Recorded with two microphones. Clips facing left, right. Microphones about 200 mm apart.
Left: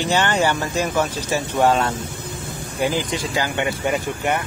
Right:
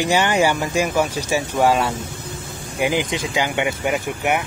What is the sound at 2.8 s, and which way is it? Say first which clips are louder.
Speech: right 1 dB; 20° right (ahead or behind).